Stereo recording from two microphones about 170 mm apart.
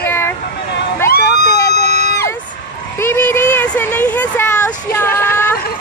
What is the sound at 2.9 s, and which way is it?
Speech, 10° left (ahead or behind).